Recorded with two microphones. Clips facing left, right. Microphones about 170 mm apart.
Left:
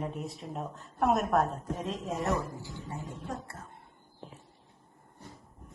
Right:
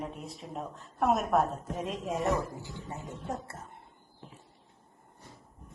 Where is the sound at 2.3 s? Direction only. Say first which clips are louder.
Right 1 dB; 20° right (ahead or behind).